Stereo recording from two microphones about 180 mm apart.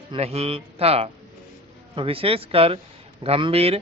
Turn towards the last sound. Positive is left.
turn(degrees=-35)  # may be behind; listen again after turning